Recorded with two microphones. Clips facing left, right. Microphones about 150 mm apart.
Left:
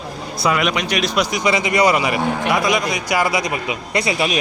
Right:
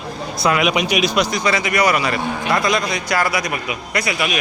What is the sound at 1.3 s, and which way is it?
A man's voice, 15° left (ahead or behind).